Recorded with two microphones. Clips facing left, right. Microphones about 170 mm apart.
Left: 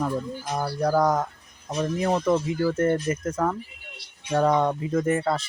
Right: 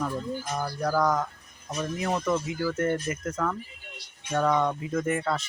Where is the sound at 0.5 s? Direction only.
35° left (ahead or behind).